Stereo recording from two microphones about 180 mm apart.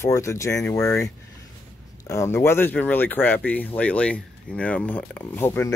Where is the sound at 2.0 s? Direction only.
15° left (ahead or behind).